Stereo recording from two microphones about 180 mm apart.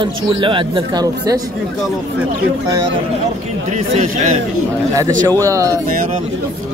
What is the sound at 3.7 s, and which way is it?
Speech, 40° right (ahead or behind).